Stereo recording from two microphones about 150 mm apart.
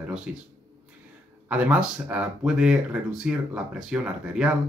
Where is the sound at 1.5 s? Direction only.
10° right (ahead or behind).